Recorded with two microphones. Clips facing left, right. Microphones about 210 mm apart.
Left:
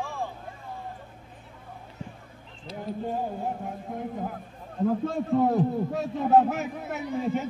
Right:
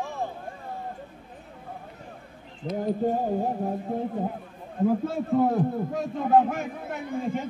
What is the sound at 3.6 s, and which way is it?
Speech, 30° right (ahead or behind).